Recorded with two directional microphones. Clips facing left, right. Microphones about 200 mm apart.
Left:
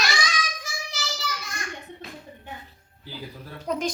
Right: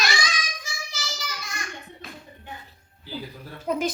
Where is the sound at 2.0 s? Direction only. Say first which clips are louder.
Left 2 dB; 25° left (ahead or behind).